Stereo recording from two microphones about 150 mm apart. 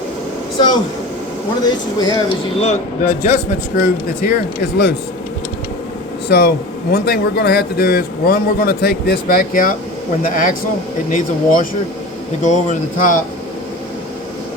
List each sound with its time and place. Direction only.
1.6 s speech: 25° left (ahead or behind)
2.6 s speech: 50° left (ahead or behind); by 4.9 s 90° left
6.2 s a man's voice: 90° left; by 13.2 s 60° left (ahead or behind)